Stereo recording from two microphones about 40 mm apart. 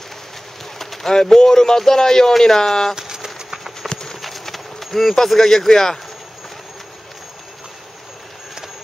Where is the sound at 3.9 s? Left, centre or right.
Centre.